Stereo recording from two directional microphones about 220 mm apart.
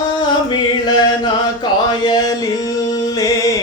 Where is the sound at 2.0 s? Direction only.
15° left (ahead or behind).